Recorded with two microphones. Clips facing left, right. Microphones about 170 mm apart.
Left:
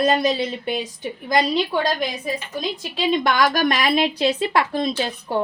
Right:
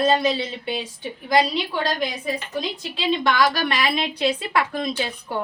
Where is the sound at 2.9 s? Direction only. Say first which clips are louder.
Left 1 dB; 45° left (ahead or behind).